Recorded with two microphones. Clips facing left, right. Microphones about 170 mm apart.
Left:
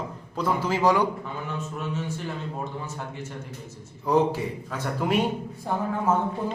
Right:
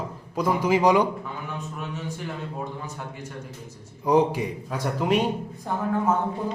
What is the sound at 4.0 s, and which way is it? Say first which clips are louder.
Speech: right 2 dB; 15° right (ahead or behind).